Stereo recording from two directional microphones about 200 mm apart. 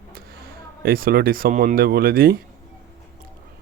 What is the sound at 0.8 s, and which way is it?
Speech, 50° right (ahead or behind).